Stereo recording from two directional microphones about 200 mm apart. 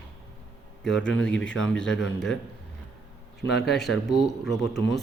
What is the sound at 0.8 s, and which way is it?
Speech, 5° left (ahead or behind).